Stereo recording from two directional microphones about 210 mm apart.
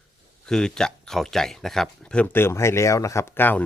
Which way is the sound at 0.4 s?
5° left (ahead or behind).